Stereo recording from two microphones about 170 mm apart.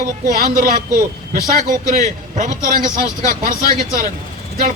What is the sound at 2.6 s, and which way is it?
Speech, 50° right (ahead or behind).